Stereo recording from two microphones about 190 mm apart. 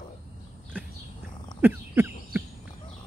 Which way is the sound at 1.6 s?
10° right (ahead or behind).